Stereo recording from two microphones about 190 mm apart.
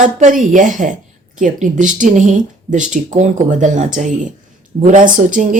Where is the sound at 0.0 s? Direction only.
40° right (ahead or behind).